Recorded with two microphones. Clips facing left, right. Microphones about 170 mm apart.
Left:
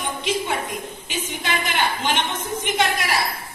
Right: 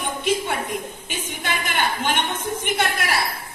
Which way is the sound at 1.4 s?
55° right (ahead or behind).